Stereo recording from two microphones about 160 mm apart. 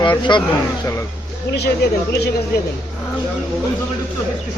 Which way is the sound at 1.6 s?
90° left.